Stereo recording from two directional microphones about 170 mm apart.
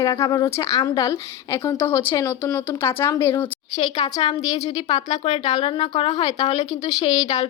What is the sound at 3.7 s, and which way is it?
Speech, 25° left (ahead or behind).